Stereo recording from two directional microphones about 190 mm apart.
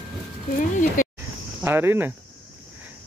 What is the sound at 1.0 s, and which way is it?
Snake, 45° left (ahead or behind).